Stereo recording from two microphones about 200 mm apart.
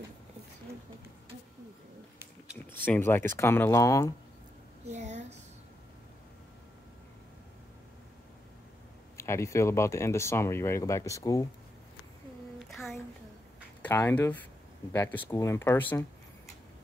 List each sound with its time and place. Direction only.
2.8 s speech: 10° left (ahead or behind)
4.8 s a sound: 35° right (ahead or behind)
9.1 s speech: 15° left (ahead or behind)
13.8 s speech: 10° left (ahead or behind)